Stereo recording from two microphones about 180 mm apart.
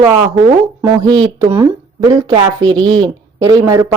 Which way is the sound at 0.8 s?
25° right (ahead or behind).